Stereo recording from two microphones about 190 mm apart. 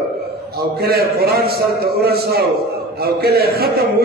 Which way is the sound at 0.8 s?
55° right (ahead or behind).